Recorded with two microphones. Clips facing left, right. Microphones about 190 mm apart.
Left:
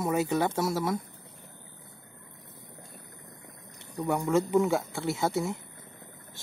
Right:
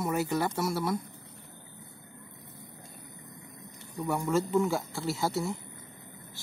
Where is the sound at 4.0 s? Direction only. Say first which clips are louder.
Left 2 dB; 20° left (ahead or behind).